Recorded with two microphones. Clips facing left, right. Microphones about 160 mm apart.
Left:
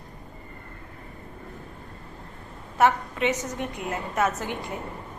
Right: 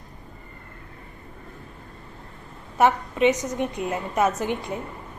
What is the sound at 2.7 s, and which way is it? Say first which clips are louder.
A woman's voice: right 2 dB; 15° right (ahead or behind).